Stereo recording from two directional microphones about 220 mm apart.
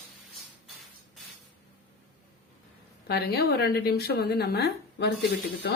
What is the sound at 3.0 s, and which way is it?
Speech, 45° left (ahead or behind).